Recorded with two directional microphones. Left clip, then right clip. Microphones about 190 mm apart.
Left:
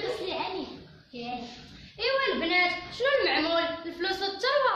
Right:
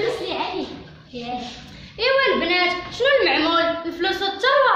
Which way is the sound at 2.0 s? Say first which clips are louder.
Right 8 dB; 25° right (ahead or behind).